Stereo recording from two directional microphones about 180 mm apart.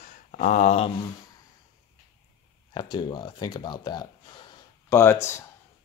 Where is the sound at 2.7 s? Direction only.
25° left (ahead or behind).